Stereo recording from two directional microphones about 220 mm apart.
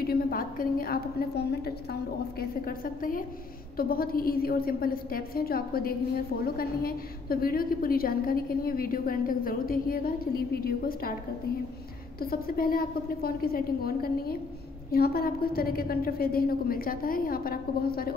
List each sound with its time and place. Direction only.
0.0 s a woman's voice: 45° left (ahead or behind)
12.2 s a woman's voice: 40° left (ahead or behind)